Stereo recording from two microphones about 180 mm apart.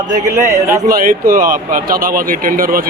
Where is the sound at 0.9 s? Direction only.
50° right (ahead or behind).